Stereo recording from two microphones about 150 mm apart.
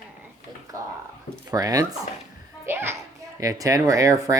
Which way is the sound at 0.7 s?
20° right (ahead or behind).